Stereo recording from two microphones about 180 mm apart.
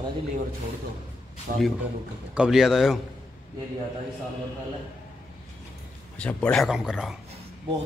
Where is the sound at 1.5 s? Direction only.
50° right (ahead or behind).